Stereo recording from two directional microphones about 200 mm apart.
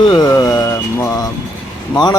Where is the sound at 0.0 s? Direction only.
20° left (ahead or behind).